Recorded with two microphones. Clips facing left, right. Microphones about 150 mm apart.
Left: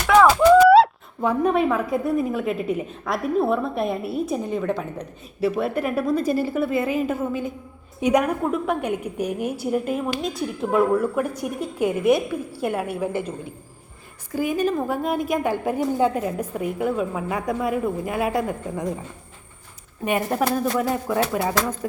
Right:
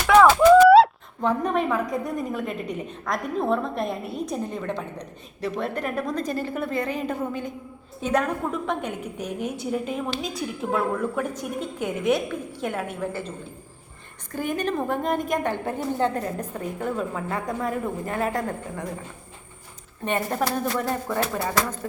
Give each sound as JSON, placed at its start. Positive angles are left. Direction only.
{"t": 0.1, "sound": "a woman's voice", "side_deg": 0}
{"t": 14.3, "sound": "a woman's voice", "side_deg": 5}
{"t": 20.1, "sound": "a woman's voice", "side_deg": 10}
{"t": 21.2, "sound": "speech", "side_deg": 20}